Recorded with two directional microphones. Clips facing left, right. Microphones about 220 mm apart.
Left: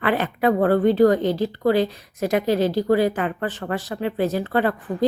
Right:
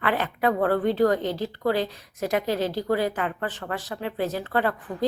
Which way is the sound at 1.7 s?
10° left (ahead or behind).